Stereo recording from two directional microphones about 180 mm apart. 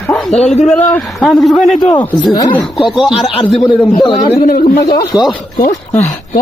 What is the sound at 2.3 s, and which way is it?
Speech, 20° left (ahead or behind).